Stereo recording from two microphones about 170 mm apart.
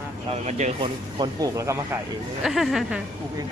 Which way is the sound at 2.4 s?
Centre (ahead or behind).